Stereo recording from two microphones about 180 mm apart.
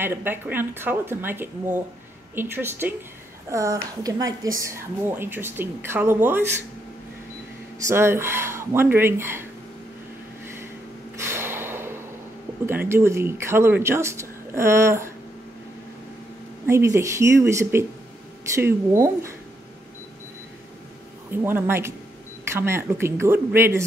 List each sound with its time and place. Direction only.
0.0 s a woman's voice: 10° right (ahead or behind)
7.8 s a woman's voice: 15° right (ahead or behind)
11.1 s snort: 15° right (ahead or behind)
12.6 s a woman's voice: 15° right (ahead or behind)
16.6 s a woman's voice: 15° right (ahead or behind)
21.3 s a woman's voice: 10° right (ahead or behind)